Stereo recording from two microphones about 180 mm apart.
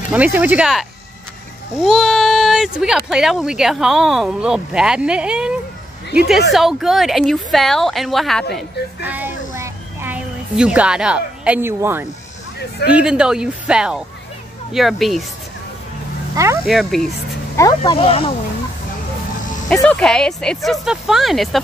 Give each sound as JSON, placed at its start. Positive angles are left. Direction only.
{"t": 0.1, "sound": "speech", "side_deg": -10}
{"t": 8.5, "sound": "a child's voice", "side_deg": -10}
{"t": 12.5, "sound": "speech", "side_deg": 65}
{"t": 12.9, "sound": "speech", "side_deg": -5}
{"t": 16.6, "sound": "speech", "side_deg": 0}
{"t": 17.6, "sound": "speech", "side_deg": 20}
{"t": 19.7, "sound": "speech", "side_deg": 5}